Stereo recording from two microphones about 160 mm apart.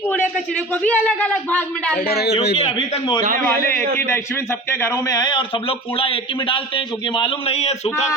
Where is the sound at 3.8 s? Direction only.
60° right (ahead or behind).